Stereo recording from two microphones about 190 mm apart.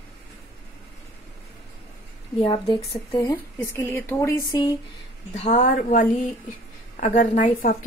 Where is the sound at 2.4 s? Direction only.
25° left (ahead or behind).